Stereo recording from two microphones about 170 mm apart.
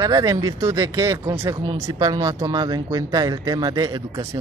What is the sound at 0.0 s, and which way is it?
Speech, 20° right (ahead or behind).